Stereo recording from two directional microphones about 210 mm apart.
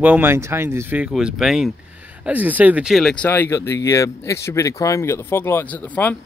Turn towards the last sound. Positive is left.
turn(degrees=10)  # may be behind; listen again after turning